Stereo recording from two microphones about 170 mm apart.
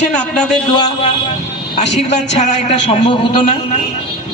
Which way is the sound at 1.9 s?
40° left (ahead or behind).